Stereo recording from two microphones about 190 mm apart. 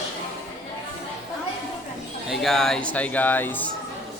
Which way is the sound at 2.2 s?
Centre (ahead or behind).